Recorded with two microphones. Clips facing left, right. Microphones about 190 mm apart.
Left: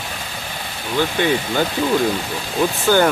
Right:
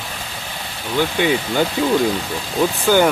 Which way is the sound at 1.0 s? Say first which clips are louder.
Right 1 dB; 15° right (ahead or behind).